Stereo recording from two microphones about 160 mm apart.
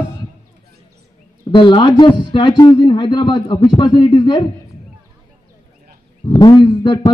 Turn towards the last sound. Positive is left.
turn(degrees=30)  # may be behind; listen again after turning